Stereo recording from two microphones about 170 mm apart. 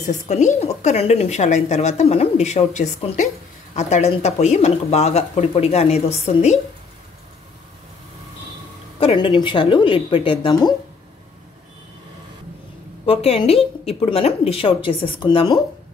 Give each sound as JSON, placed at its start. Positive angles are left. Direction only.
{"t": 0.0, "sound": "a woman's voice", "side_deg": 45}
{"t": 9.0, "sound": "a woman's voice", "side_deg": 30}
{"t": 13.0, "sound": "a woman's voice", "side_deg": 35}